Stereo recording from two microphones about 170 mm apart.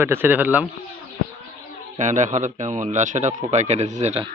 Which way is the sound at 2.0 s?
45° right (ahead or behind).